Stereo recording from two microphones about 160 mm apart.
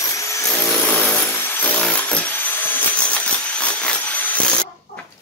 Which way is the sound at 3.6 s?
10° left (ahead or behind).